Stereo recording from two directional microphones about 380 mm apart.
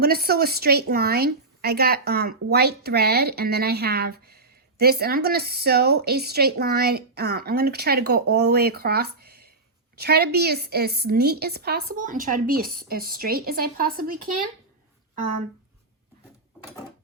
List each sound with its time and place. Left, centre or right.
0.0 s a woman's voice: right